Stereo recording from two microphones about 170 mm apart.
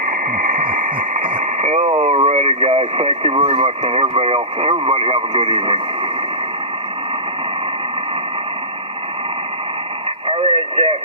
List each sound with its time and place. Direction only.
0.0 s radio: 55° right (ahead or behind); by 5.8 s 30° right (ahead or behind)
10.2 s radio: 30° right (ahead or behind)